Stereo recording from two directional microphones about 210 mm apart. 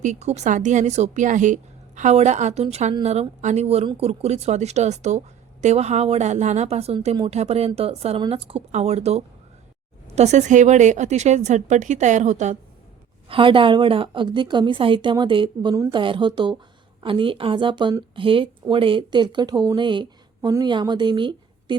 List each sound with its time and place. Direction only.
0.0 s a woman's voice: 35° right (ahead or behind)